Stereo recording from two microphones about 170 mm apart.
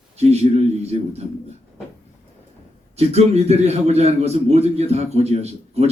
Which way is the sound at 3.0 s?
40° right (ahead or behind).